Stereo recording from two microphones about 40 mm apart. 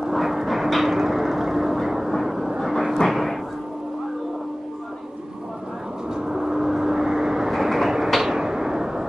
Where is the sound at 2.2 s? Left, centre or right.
Centre.